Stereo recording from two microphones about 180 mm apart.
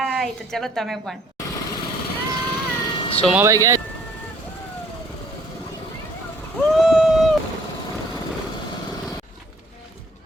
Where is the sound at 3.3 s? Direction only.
15° right (ahead or behind).